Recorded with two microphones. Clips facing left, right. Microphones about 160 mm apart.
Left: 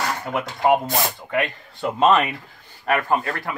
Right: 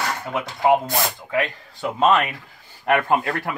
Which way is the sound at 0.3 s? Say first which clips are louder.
Right 1 dB; centre (ahead or behind).